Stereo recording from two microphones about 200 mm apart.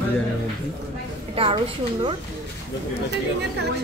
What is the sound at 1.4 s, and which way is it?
Speech, 25° right (ahead or behind).